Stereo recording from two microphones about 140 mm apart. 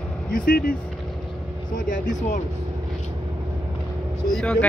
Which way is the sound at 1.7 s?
70° left (ahead or behind).